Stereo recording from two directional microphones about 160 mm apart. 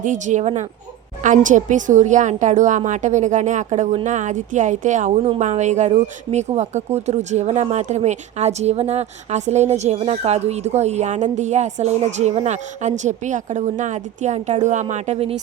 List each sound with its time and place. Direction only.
0.0 s speech: 50° right (ahead or behind)